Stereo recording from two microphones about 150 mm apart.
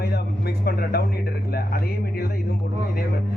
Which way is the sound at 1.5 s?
85° left.